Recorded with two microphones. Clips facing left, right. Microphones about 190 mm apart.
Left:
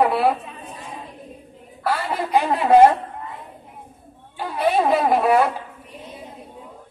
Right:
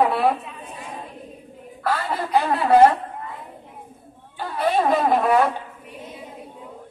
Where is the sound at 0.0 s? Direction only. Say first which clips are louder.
Left 1 dB; 5° left (ahead or behind).